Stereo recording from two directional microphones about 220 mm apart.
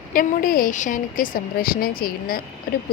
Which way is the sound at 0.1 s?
40° left (ahead or behind).